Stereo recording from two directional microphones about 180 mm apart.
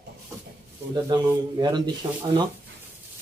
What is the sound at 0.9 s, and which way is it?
Speech, 20° right (ahead or behind).